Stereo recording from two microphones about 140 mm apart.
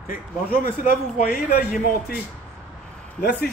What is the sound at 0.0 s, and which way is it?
Speech, 90° left.